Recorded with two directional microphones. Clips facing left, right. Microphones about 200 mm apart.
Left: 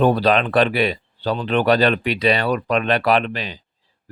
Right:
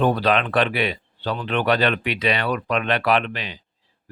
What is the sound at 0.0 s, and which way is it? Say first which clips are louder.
Speech: left 3 dB; 35° left (ahead or behind).